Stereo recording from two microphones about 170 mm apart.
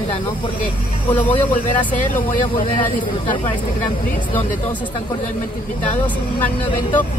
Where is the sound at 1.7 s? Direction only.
50° left (ahead or behind).